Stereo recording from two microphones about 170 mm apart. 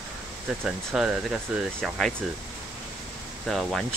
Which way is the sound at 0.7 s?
5° right (ahead or behind).